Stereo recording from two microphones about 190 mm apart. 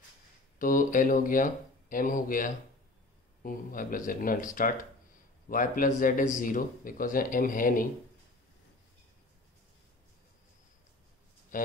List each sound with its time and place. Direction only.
0.6 s a man's voice: 45° left (ahead or behind)
11.5 s speech: 45° left (ahead or behind)